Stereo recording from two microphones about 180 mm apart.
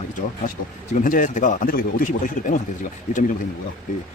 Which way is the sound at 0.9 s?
45° left (ahead or behind).